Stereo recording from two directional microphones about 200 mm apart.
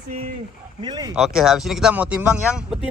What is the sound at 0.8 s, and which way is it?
Speech, 20° right (ahead or behind).